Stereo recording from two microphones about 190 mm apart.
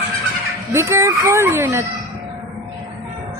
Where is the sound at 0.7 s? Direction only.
15° right (ahead or behind).